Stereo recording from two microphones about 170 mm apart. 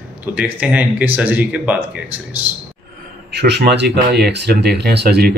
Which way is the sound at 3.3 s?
80° right.